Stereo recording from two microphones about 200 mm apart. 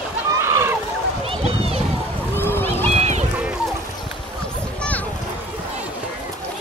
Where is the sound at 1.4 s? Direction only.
30° right (ahead or behind).